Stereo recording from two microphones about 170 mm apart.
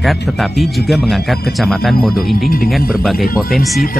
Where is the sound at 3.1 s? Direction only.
60° left (ahead or behind).